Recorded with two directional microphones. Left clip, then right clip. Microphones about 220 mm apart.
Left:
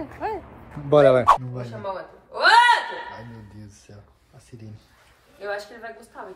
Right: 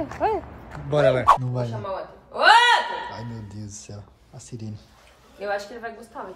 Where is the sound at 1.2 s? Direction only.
Centre (ahead or behind).